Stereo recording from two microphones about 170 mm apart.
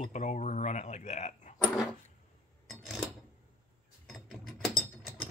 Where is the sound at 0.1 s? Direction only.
45° left (ahead or behind).